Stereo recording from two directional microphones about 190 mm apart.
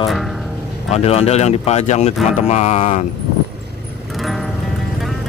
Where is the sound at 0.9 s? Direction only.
35° left (ahead or behind).